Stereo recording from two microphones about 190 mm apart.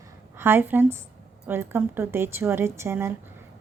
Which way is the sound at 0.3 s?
10° right (ahead or behind).